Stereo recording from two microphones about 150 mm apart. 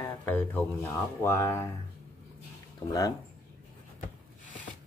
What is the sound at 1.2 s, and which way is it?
Speech, 20° left (ahead or behind).